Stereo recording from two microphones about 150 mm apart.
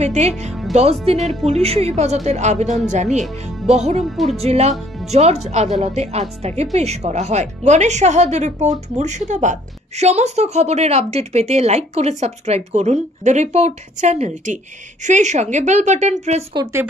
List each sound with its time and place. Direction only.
0.0 s speech: 50° right (ahead or behind)
0.5 s music: centre (ahead or behind)
1.4 s a woman's voice: 45° right (ahead or behind)
4.0 s speech: centre (ahead or behind)
4.4 s a woman's voice: 45° right (ahead or behind)